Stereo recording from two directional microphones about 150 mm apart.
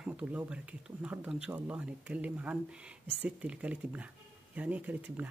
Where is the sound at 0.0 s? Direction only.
10° right (ahead or behind).